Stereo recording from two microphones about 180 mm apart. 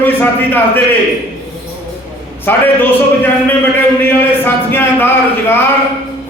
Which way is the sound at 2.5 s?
10° left (ahead or behind).